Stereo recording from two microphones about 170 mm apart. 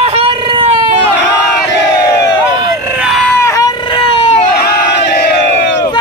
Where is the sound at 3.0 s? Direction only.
Centre (ahead or behind).